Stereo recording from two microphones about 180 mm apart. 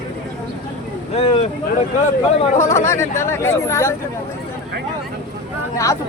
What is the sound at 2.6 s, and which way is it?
Speech, 15° left (ahead or behind).